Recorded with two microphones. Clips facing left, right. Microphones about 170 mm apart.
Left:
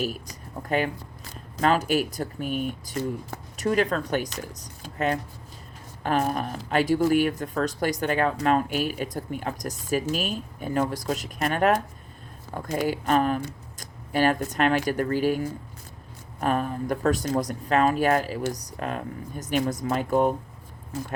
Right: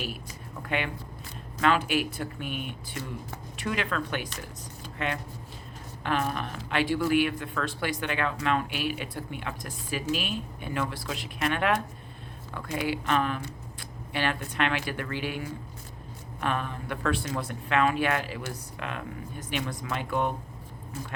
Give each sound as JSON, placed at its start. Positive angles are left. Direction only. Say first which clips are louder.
{"t": 0.0, "sound": "speech", "louder": "left 7 dB", "side_deg": 40}